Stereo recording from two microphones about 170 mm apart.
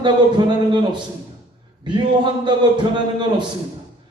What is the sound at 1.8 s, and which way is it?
A man's voice, 25° right (ahead or behind).